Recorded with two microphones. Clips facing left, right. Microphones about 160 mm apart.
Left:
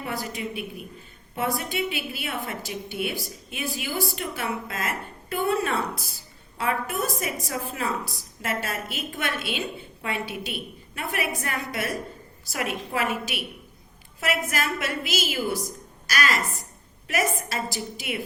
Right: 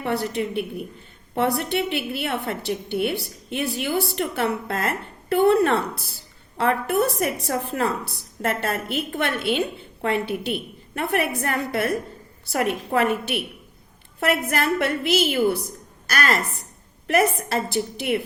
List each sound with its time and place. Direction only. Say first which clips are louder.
0.0 s a woman's voice: right 7 dB; 65° right (ahead or behind)